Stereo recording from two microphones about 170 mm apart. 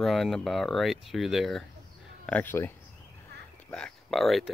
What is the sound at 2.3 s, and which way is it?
Speech, 10° left (ahead or behind).